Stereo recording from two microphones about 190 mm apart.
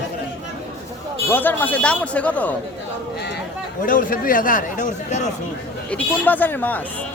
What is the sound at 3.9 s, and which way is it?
Speech, 45° left (ahead or behind).